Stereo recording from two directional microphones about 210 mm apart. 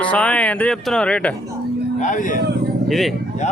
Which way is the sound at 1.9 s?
35° left (ahead or behind).